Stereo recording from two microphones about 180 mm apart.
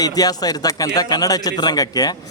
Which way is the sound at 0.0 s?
20° left (ahead or behind).